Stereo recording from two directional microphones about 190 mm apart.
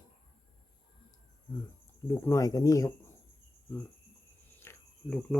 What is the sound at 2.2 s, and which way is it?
Speech, 20° left (ahead or behind).